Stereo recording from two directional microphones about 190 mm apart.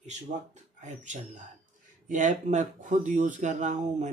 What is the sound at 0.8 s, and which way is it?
Speech, 40° right (ahead or behind).